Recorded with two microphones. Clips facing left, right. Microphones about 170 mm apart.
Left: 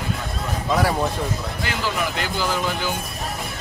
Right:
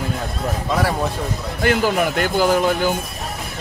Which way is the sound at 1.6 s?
50° right (ahead or behind).